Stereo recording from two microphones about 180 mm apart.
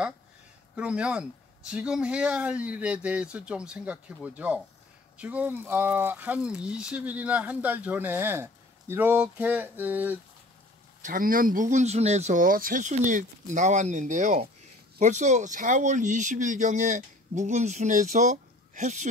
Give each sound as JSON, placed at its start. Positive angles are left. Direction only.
{"t": 0.7, "sound": "speech", "side_deg": -5}
{"t": 11.0, "sound": "speech", "side_deg": -50}